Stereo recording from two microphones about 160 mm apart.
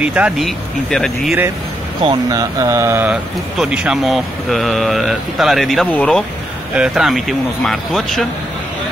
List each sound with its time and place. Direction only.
0.0 s speech: 10° right (ahead or behind)
0.5 s speech: 5° left (ahead or behind)
2.2 s speech: 20° right (ahead or behind)
3.5 s speech: 5° right (ahead or behind)
6.7 s speech: 5° right (ahead or behind)